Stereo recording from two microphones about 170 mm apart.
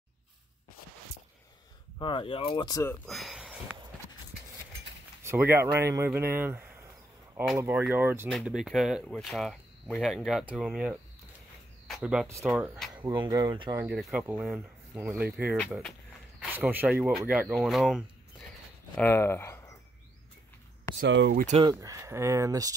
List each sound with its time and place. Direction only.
2.0 s speech: 30° left (ahead or behind)
2.9 s speech: centre (ahead or behind)
5.2 s speech: 15° right (ahead or behind)
8.3 s speech: centre (ahead or behind)
13.0 s speech: 25° right (ahead or behind)
13.8 s speech: 5° right (ahead or behind)
18.9 s speech: 15° left (ahead or behind)
21.0 s speech: 75° right (ahead or behind)
21.6 s speech: 20° right (ahead or behind)